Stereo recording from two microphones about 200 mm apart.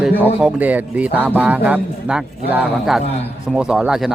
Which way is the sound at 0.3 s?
5° right (ahead or behind).